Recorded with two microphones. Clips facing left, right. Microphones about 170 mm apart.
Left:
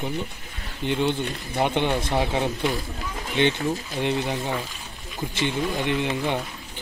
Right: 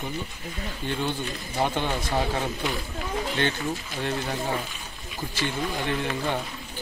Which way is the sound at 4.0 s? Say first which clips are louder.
Left 4 dB; 15° left (ahead or behind).